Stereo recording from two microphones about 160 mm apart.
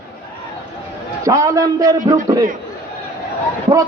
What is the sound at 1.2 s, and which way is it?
Speech, 20° right (ahead or behind).